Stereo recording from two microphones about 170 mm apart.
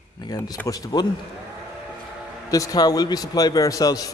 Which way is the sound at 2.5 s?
20° left (ahead or behind).